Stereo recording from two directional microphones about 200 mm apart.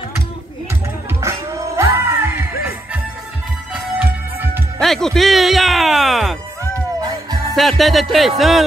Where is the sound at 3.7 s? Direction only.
10° right (ahead or behind).